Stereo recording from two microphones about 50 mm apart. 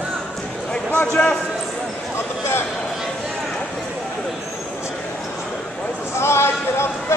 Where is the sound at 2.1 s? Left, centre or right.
Left.